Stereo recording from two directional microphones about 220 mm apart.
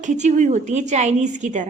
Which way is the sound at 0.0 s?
35° right (ahead or behind).